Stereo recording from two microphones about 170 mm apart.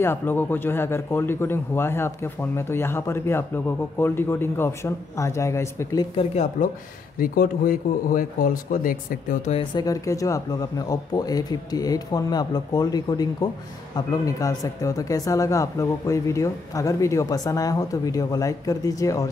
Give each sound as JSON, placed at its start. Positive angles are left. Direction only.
{"t": 0.0, "sound": "a man's voice", "side_deg": 10}
{"t": 6.1, "sound": "speech", "side_deg": 40}
{"t": 7.2, "sound": "speech", "side_deg": 55}
{"t": 9.5, "sound": "speech", "side_deg": 30}